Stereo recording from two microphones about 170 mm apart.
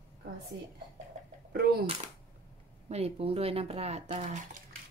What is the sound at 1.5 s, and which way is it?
Speech, 65° right (ahead or behind).